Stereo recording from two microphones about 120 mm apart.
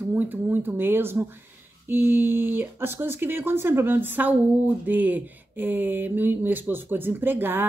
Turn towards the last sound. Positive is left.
turn(degrees=-15)  # may be behind; listen again after turning